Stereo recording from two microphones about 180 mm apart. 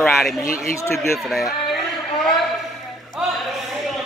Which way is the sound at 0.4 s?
15° left (ahead or behind).